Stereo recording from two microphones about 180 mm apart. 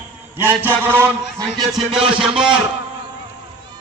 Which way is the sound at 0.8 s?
10° right (ahead or behind).